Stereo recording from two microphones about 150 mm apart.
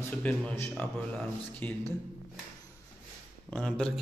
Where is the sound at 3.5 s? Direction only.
5° left (ahead or behind).